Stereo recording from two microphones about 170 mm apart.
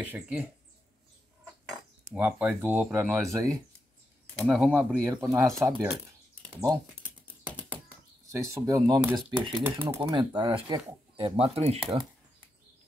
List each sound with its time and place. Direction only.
0.0 s speech: 10° right (ahead or behind)
2.1 s speech: 10° right (ahead or behind)
4.4 s speech: 5° right (ahead or behind)
7.4 s a sound: 10° right (ahead or behind)
8.3 s speech: 20° right (ahead or behind)
9.6 s speech: 10° right (ahead or behind)
9.9 s speech: 30° right (ahead or behind)